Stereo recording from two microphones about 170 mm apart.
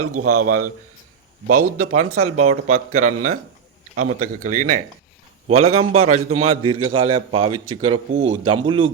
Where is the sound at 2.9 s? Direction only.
45° right (ahead or behind).